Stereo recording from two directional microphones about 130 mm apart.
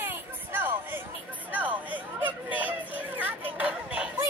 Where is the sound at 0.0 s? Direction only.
15° right (ahead or behind).